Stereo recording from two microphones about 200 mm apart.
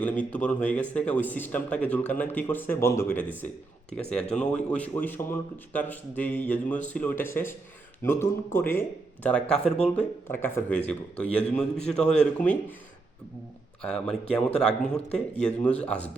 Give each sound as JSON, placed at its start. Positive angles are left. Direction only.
{"t": 0.0, "sound": "speech", "side_deg": 5}
{"t": 11.9, "sound": "speech", "side_deg": 35}
{"t": 12.2, "sound": "speech", "side_deg": 5}
{"t": 13.8, "sound": "speech", "side_deg": 5}